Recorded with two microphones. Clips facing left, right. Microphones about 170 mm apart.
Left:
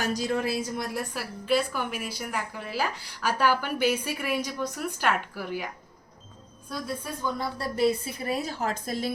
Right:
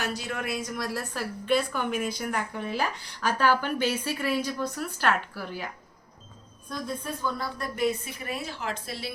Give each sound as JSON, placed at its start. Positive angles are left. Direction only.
{"t": 0.0, "sound": "a woman's voice", "side_deg": 40}
{"t": 1.1, "sound": "speech", "side_deg": 5}
{"t": 6.7, "sound": "a woman's voice", "side_deg": 10}